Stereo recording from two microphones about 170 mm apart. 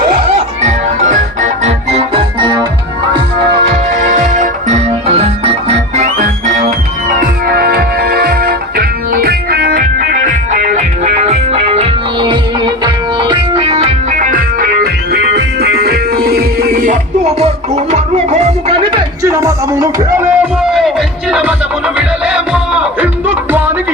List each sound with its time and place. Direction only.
0.3 s music: 40° right (ahead or behind)
3.8 s music: 45° right (ahead or behind)
7.2 s music: 60° right (ahead or behind)
10.2 s music: 45° right (ahead or behind)
14.3 s music: 55° right (ahead or behind)
19.2 s music: 20° right (ahead or behind)
20.6 s music: centre (ahead or behind)